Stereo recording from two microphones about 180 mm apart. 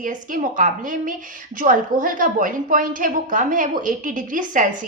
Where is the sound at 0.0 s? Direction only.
45° right (ahead or behind).